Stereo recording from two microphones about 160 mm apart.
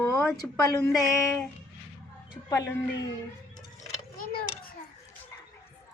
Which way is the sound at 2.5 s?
15° left (ahead or behind).